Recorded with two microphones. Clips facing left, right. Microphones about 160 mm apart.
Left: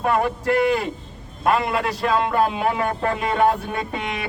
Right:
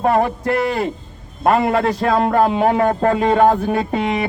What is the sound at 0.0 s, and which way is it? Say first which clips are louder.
A man's voice: right 4 dB; 40° right (ahead or behind).